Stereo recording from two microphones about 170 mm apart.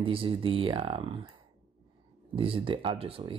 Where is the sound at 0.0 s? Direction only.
30° right (ahead or behind).